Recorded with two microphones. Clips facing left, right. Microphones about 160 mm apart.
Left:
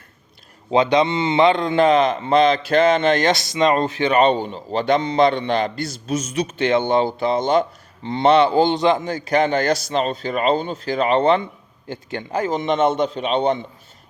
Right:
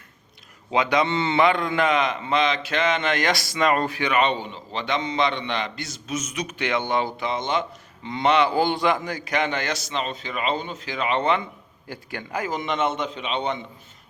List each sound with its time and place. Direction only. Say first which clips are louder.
0.7 s a man's voice: left 5 dB; 25° left (ahead or behind)